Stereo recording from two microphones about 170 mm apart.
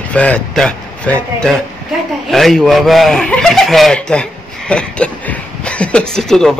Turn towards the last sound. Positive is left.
turn(degrees=5)  # may be behind; listen again after turning